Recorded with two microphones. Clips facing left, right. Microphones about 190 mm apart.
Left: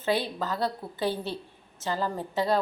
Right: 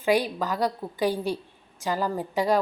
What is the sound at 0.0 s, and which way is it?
A woman's voice, 15° right (ahead or behind).